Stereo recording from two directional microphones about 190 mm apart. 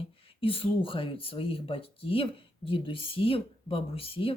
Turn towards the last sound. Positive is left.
turn(degrees=30)  # may be behind; listen again after turning